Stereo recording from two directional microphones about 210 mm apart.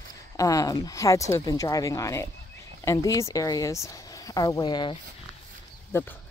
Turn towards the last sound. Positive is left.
turn(degrees=10)  # may be behind; listen again after turning